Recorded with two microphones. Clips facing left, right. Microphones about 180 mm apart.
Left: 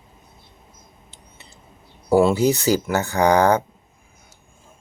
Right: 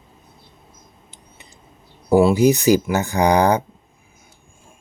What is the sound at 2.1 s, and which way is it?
Speech, 10° right (ahead or behind).